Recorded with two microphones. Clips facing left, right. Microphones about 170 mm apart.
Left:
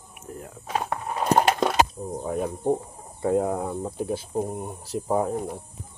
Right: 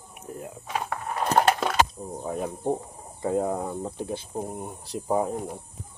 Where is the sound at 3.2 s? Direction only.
5° left (ahead or behind).